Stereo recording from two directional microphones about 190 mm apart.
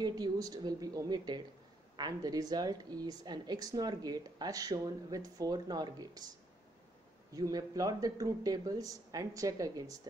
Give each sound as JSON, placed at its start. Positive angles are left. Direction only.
{"t": 0.0, "sound": "a woman's voice", "side_deg": -20}
{"t": 7.3, "sound": "a woman's voice", "side_deg": -20}